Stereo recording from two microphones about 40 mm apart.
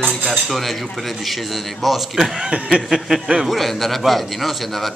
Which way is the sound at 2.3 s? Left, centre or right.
Right.